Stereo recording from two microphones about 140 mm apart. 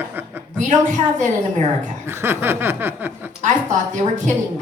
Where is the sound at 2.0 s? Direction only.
15° right (ahead or behind).